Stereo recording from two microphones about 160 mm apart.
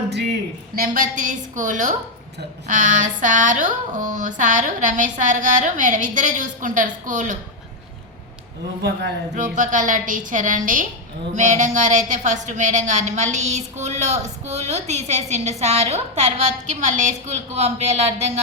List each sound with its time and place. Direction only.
0.8 s speech: 55° right (ahead or behind)
8.8 s a man's voice: 90° right
9.3 s speech: 50° right (ahead or behind)